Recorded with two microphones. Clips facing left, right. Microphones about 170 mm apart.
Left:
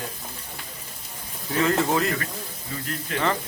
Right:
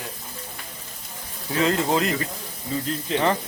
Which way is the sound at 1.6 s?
20° right (ahead or behind).